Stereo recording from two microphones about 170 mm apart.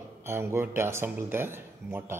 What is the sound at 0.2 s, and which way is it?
Speech, 15° right (ahead or behind).